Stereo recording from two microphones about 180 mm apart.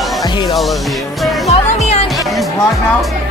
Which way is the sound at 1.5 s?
35° left (ahead or behind).